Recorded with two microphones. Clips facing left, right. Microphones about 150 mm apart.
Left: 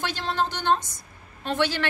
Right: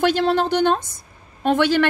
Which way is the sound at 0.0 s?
55° right (ahead or behind).